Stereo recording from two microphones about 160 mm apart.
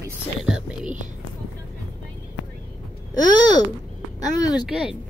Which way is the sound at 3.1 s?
25° left (ahead or behind).